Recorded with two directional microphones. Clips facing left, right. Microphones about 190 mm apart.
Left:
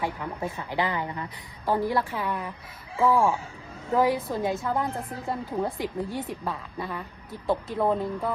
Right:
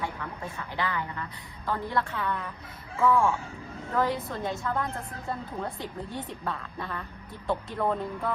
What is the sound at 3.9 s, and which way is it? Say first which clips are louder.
A woman's voice: left 5 dB; 15° left (ahead or behind).